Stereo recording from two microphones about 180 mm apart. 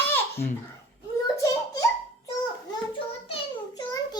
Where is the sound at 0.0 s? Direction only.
10° left (ahead or behind).